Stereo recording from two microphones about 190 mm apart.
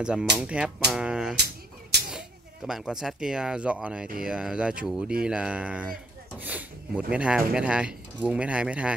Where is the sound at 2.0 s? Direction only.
5° right (ahead or behind).